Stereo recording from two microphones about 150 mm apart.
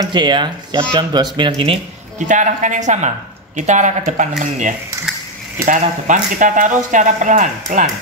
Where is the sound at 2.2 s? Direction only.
55° right (ahead or behind).